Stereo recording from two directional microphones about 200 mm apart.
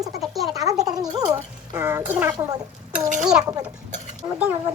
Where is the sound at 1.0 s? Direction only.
20° right (ahead or behind).